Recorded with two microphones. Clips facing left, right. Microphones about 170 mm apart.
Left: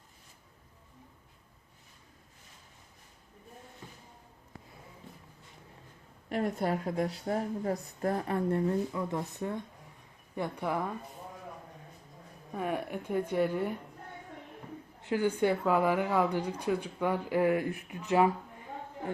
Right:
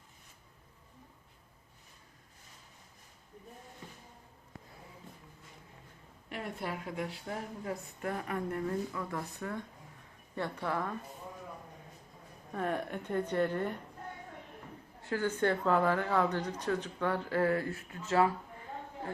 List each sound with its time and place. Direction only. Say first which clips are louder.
6.2 s a woman's voice: left 8 dB; 40° left (ahead or behind); by 10.9 s 15° left (ahead or behind)
12.5 s speech: left 1 dB; 10° left (ahead or behind)
15.0 s speech: left 3 dB; 15° left (ahead or behind)